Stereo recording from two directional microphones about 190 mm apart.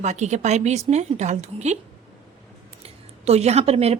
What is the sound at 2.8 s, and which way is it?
Speech, 35° right (ahead or behind).